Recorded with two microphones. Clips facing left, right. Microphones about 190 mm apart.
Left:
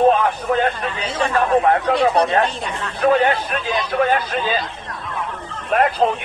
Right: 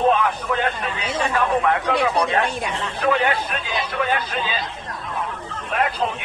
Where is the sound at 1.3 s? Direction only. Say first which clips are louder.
Left 5 dB; 35° left (ahead or behind).